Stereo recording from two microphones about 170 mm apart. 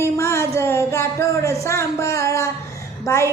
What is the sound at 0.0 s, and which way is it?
Speech, 15° left (ahead or behind).